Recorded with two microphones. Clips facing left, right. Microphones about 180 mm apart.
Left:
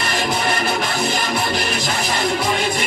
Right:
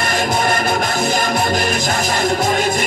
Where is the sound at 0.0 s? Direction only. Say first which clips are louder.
Right 3 dB; 45° right (ahead or behind).